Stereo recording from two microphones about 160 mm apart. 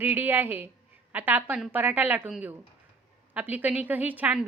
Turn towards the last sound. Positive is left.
turn(degrees=-10)  # may be behind; listen again after turning